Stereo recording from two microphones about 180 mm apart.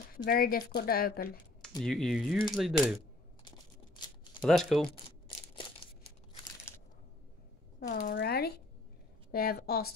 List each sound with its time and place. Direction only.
0.1 s speech: 55° left (ahead or behind)
1.8 s speech: centre (ahead or behind)
4.2 s shuffling cards: 30° left (ahead or behind)
4.5 s speech: centre (ahead or behind)
8.1 s speech: 60° left (ahead or behind)